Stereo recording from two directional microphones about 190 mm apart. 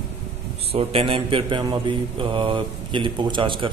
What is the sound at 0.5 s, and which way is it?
A man's voice, 30° right (ahead or behind).